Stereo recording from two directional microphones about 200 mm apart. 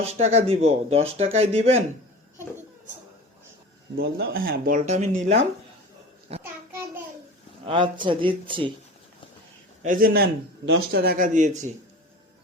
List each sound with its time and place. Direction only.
0.0 s speech: 30° right (ahead or behind)
3.9 s speech: 50° right (ahead or behind); by 5.5 s 35° right (ahead or behind)
6.4 s a sound: 10° right (ahead or behind)
7.6 s speech: 25° right (ahead or behind)
9.8 s speech: 45° right (ahead or behind)